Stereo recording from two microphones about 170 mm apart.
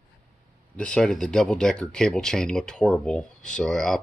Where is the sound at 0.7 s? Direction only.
5° left (ahead or behind).